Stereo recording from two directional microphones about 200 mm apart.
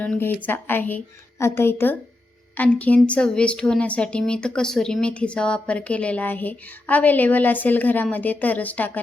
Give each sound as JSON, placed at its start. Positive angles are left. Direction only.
{"t": 0.0, "sound": "a woman's voice", "side_deg": 5}